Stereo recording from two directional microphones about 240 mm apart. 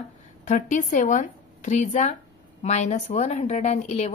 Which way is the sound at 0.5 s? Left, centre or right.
Left.